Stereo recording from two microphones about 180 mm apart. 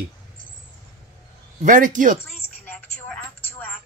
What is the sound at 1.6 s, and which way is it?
Speech, 45° right (ahead or behind).